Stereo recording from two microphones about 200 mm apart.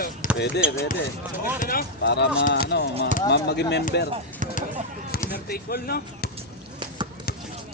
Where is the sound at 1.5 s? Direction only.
45° left (ahead or behind).